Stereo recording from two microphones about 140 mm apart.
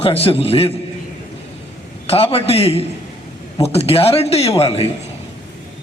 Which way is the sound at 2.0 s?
45° left (ahead or behind).